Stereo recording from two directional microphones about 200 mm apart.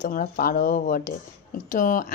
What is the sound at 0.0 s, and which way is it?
Speech, 40° left (ahead or behind).